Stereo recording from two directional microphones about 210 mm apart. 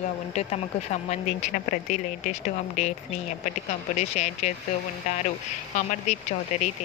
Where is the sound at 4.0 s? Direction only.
35° left (ahead or behind).